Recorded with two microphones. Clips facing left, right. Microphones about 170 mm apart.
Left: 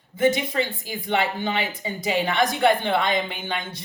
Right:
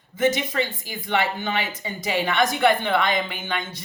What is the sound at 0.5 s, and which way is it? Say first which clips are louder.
A woman's voice: left 1 dB; 30° left (ahead or behind).